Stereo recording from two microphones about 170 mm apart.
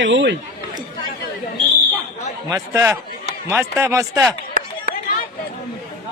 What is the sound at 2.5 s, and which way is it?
Speech, 15° right (ahead or behind).